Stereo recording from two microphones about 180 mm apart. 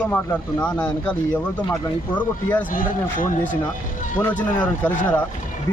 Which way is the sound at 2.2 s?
10° left (ahead or behind).